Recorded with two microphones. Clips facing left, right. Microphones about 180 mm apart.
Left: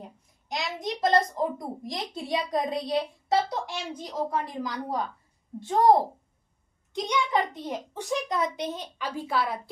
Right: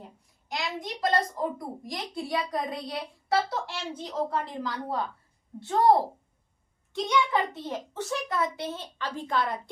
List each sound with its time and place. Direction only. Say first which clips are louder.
0.4 s a child's voice: left 2 dB; 20° left (ahead or behind)
6.9 s a child's voice: even; 15° left (ahead or behind)